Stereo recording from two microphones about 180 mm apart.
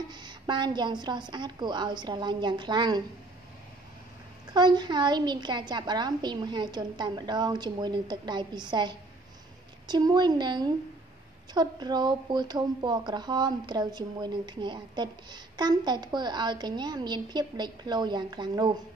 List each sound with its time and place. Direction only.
0.1 s speech: 25° right (ahead or behind)
4.6 s speech: 25° right (ahead or behind)